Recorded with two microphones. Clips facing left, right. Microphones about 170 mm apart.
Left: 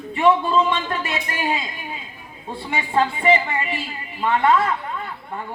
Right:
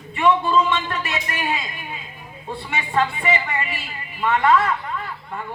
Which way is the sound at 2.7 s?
30° left (ahead or behind).